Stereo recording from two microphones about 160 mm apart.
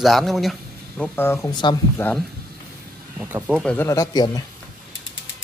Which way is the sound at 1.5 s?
30° left (ahead or behind).